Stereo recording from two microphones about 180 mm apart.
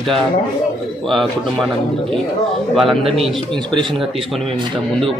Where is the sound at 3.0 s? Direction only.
30° right (ahead or behind).